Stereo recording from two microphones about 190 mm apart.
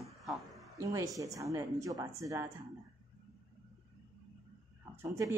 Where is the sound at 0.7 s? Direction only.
20° right (ahead or behind).